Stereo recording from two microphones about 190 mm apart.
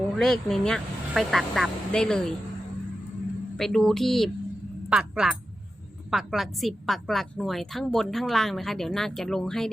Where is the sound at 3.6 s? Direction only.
Centre (ahead or behind).